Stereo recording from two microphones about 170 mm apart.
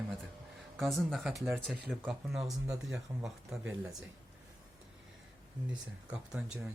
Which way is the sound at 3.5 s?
5° right (ahead or behind).